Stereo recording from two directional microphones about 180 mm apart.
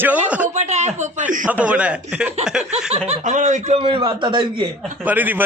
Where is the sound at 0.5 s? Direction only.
40° right (ahead or behind).